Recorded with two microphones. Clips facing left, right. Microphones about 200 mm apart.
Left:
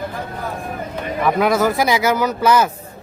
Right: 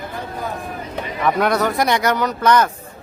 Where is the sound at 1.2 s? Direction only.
Centre (ahead or behind).